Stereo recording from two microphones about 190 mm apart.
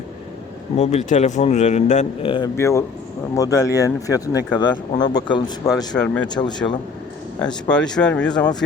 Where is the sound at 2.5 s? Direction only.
15° left (ahead or behind).